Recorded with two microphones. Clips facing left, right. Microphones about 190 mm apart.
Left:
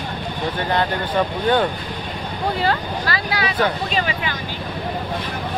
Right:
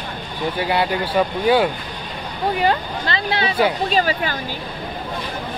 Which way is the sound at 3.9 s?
40° right (ahead or behind).